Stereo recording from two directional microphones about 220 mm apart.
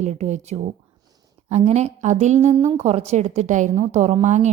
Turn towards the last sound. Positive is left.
turn(degrees=-30)  # may be behind; listen again after turning